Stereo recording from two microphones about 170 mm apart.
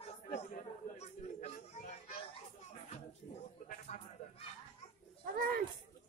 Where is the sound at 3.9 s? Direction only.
45° left (ahead or behind).